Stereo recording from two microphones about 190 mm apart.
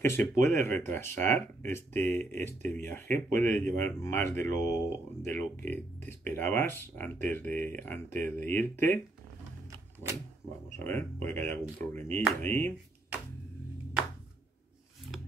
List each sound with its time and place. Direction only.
0.0 s speech: 15° left (ahead or behind)
9.7 s typewriter: 15° right (ahead or behind)
10.8 s speech: 10° left (ahead or behind)